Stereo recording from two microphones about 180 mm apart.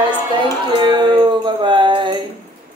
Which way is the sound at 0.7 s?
25° right (ahead or behind).